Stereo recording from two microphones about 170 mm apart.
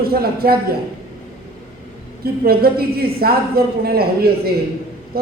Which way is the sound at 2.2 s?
65° right (ahead or behind).